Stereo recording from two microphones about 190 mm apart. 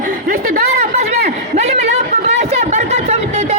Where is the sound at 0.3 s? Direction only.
45° right (ahead or behind).